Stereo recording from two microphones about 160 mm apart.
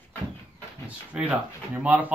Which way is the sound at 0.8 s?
10° right (ahead or behind).